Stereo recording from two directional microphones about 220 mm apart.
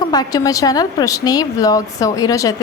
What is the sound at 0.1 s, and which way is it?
Speech, 15° left (ahead or behind).